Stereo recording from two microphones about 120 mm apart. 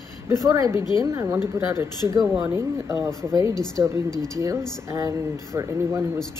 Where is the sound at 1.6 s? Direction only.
25° right (ahead or behind).